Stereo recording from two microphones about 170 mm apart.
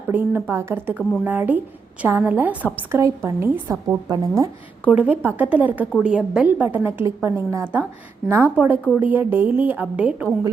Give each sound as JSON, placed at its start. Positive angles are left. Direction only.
{"t": 0.1, "sound": "speech", "side_deg": -10}
{"t": 4.9, "sound": "speech", "side_deg": -10}